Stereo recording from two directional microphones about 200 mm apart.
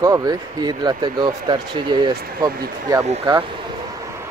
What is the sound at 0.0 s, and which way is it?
Speech, 20° right (ahead or behind).